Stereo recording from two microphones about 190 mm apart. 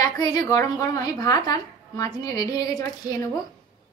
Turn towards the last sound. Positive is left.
turn(degrees=20)  # may be behind; listen again after turning